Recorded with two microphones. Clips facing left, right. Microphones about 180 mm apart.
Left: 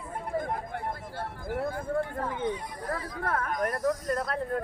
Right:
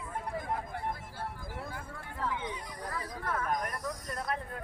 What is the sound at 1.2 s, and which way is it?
Speech, 60° left (ahead or behind).